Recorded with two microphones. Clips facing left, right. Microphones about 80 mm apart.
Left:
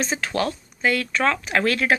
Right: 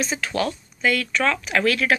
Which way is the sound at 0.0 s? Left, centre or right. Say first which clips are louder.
Even; left.